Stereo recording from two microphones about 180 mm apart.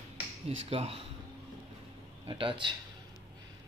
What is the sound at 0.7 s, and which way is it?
Speech, 30° right (ahead or behind).